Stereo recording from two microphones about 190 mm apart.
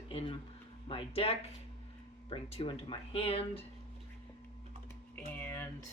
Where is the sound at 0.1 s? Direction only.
30° left (ahead or behind).